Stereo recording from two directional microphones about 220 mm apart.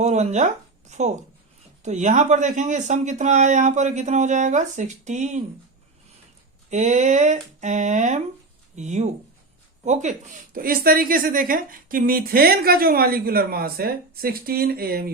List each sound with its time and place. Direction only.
0.0 s a woman's voice: 30° right (ahead or behind)
6.7 s a woman's voice: 30° right (ahead or behind)